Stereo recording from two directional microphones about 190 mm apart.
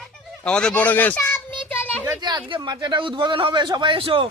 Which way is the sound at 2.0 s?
20° right (ahead or behind).